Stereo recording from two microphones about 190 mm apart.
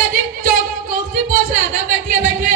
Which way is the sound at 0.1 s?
50° right (ahead or behind).